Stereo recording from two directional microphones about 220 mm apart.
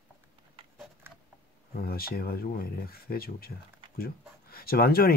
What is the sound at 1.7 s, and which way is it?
Speech, 45° left (ahead or behind).